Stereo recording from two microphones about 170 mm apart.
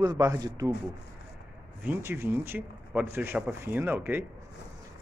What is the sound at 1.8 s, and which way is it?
Speech, 15° right (ahead or behind).